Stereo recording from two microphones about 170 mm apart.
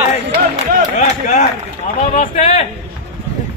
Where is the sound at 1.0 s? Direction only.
45° left (ahead or behind).